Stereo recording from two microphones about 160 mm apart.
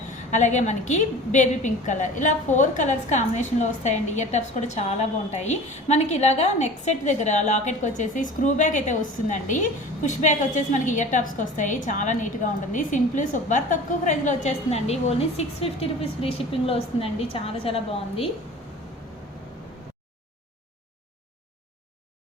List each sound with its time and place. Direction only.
0.3 s a woman's voice: 50° left (ahead or behind)